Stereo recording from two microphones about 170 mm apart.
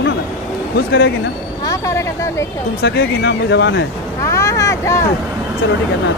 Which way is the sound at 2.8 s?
80° left.